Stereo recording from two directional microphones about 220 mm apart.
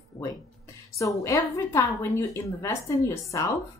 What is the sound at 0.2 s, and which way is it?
Speech, 15° left (ahead or behind).